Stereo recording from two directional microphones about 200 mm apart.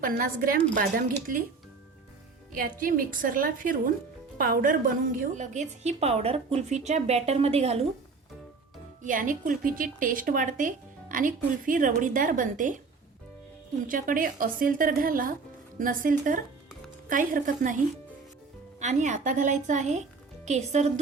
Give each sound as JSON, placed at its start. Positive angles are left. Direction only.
{"t": 0.0, "sound": "a woman's voice", "side_deg": -45}
{"t": 2.5, "sound": "a woman's voice", "side_deg": -45}
{"t": 9.0, "sound": "speech", "side_deg": -40}
{"t": 13.8, "sound": "a woman's voice", "side_deg": -45}